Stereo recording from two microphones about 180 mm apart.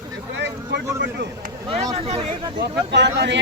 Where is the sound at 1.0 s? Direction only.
70° right (ahead or behind).